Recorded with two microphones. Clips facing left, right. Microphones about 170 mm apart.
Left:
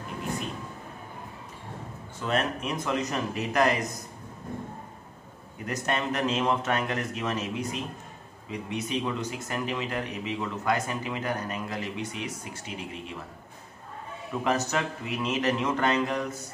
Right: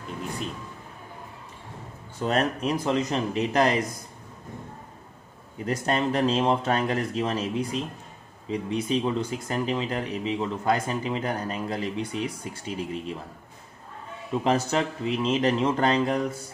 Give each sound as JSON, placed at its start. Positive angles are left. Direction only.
{"t": 2.1, "sound": "speech", "side_deg": -35}
{"t": 5.7, "sound": "speech", "side_deg": -30}
{"t": 14.4, "sound": "speech", "side_deg": -30}